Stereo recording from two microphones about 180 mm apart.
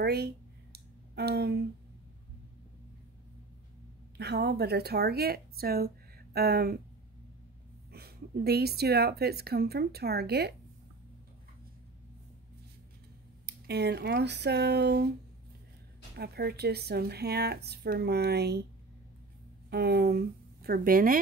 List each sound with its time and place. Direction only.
0.0 s speech: 60° right (ahead or behind)
0.7 s a sound: 65° right (ahead or behind)
4.2 s speech: 65° right (ahead or behind)
7.9 s speech: 60° right (ahead or behind)
13.5 s speech: 65° right (ahead or behind)
16.2 s speech: 65° right (ahead or behind)
19.7 s a woman's voice: 65° right (ahead or behind)